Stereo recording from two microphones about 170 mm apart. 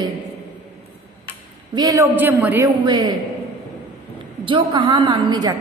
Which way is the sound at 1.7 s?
20° right (ahead or behind).